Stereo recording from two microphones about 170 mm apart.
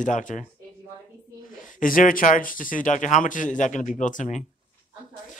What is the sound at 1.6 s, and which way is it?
Speech, 50° left (ahead or behind).